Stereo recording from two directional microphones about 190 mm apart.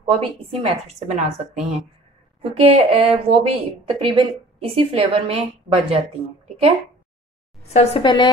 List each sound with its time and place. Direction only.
0.0 s a woman's voice: 30° right (ahead or behind)
7.7 s a woman's voice: 35° left (ahead or behind)